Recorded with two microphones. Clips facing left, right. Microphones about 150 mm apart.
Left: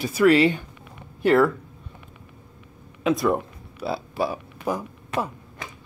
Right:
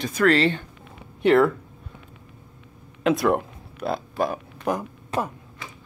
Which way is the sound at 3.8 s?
50° right (ahead or behind).